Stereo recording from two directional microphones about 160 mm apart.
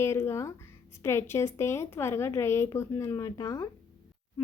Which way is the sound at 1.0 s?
15° left (ahead or behind).